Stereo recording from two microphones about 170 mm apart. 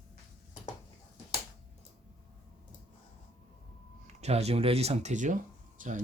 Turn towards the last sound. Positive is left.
turn(degrees=-50)  # may be behind; listen again after turning